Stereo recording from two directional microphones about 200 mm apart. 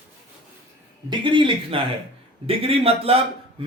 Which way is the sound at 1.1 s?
25° right (ahead or behind).